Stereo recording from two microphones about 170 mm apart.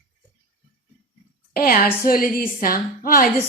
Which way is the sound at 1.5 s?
60° left (ahead or behind).